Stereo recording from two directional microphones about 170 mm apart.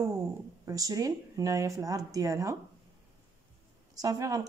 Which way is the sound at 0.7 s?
20° right (ahead or behind).